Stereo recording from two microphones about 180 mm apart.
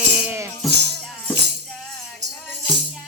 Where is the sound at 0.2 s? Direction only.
10° right (ahead or behind).